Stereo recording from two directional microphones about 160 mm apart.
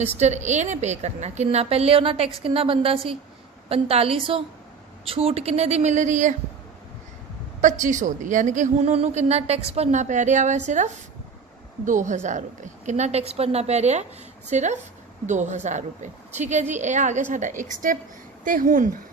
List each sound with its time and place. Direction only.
0.2 s a woman's voice: 45° right (ahead or behind)
7.6 s a woman's voice: 50° right (ahead or behind)